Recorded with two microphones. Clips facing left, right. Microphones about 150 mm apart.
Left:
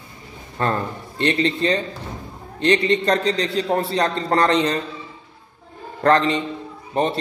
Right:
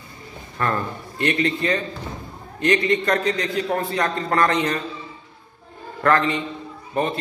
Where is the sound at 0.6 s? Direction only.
30° left (ahead or behind).